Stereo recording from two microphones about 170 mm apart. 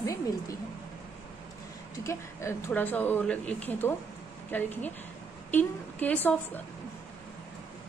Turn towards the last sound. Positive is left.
turn(degrees=10)  # may be behind; listen again after turning